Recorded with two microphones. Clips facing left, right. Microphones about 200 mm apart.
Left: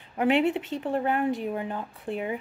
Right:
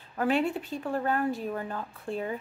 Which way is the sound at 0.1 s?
20° left (ahead or behind).